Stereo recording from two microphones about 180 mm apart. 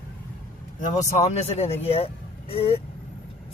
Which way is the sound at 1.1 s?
35° left (ahead or behind).